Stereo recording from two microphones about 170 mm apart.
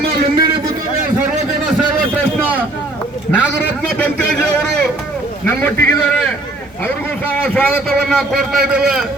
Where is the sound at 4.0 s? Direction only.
5° left (ahead or behind).